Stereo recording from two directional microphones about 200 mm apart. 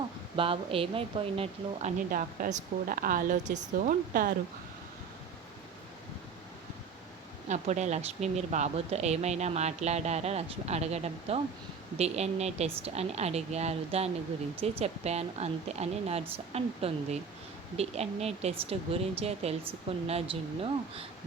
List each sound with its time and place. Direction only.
0.3 s speech: 25° right (ahead or behind)
2.0 s a woman's voice: 45° right (ahead or behind)
7.4 s speech: 35° right (ahead or behind)